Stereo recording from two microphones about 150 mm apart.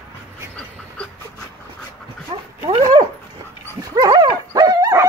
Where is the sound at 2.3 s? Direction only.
30° right (ahead or behind).